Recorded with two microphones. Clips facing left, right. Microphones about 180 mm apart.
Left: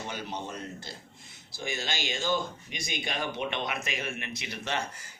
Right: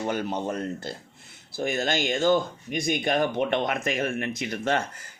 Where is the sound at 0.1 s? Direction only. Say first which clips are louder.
Right 9 dB; 55° right (ahead or behind).